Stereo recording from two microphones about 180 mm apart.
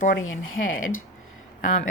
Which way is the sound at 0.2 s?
90° left.